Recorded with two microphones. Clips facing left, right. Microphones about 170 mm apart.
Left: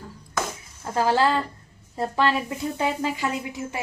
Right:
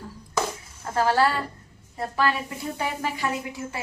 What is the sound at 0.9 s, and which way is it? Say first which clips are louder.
A woman's voice: left 1 dB; 15° left (ahead or behind).